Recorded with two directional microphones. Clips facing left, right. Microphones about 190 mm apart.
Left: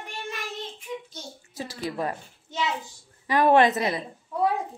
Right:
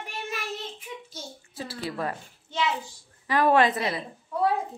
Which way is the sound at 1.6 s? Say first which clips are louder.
Left 2 dB; 15° left (ahead or behind).